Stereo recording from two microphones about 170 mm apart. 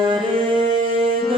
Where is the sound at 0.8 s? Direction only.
35° right (ahead or behind).